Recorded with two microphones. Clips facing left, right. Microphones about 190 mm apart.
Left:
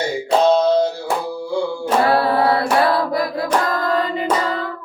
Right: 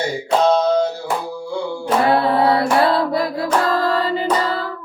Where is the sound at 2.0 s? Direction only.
20° right (ahead or behind).